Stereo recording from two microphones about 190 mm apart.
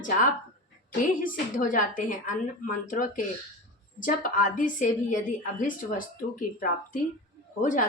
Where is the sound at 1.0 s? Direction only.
45° left (ahead or behind).